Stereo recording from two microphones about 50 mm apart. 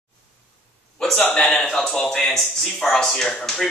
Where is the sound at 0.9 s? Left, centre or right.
Centre.